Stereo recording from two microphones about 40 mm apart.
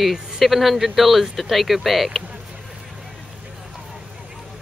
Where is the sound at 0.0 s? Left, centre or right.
Centre.